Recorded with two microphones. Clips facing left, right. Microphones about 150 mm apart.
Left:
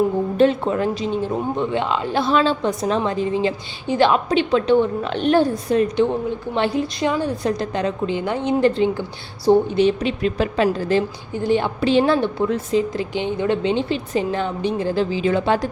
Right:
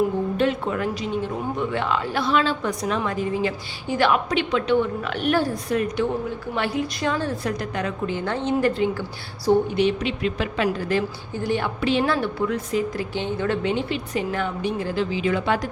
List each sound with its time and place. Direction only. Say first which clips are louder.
0.3 s speech: left 9 dB; 30° left (ahead or behind); by 8.5 s 15° left (ahead or behind)
8.6 s a woman's voice: left 4 dB; 25° left (ahead or behind)